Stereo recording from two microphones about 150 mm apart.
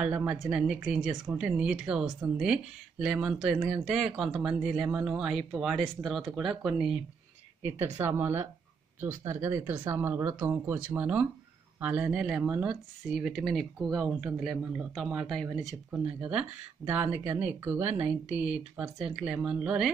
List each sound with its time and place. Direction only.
0.0 s speech: 5° right (ahead or behind)
7.6 s speech: 15° right (ahead or behind)